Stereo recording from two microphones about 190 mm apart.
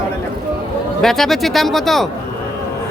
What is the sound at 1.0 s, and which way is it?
Speech, centre (ahead or behind).